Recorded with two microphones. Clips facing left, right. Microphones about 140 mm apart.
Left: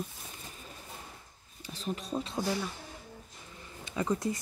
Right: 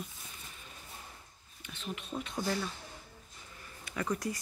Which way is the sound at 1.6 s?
35° left (ahead or behind).